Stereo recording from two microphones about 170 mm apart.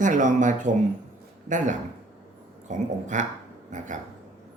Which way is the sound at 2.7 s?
45° right (ahead or behind).